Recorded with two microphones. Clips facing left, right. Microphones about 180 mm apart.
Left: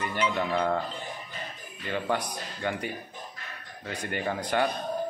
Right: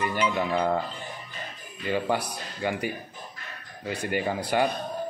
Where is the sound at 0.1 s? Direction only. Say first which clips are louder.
Right 2 dB; 5° right (ahead or behind).